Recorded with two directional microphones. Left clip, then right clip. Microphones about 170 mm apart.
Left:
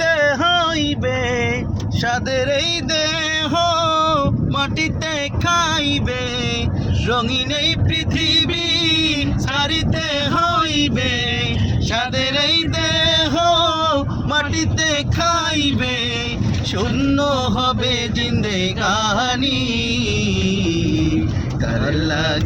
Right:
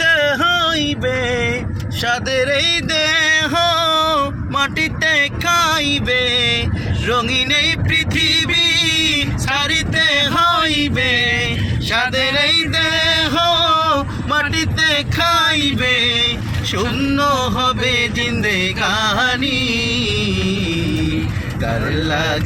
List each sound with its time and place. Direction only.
0.0 s a sound: centre (ahead or behind)
2.0 s music: centre (ahead or behind)
20.0 s music: 25° right (ahead or behind)